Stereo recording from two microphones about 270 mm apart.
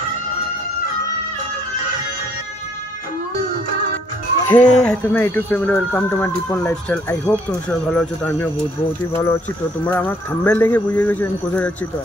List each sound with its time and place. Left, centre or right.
4.5 s speech: centre